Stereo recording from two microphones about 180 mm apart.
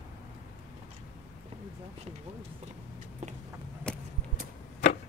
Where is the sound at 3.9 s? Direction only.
5° left (ahead or behind).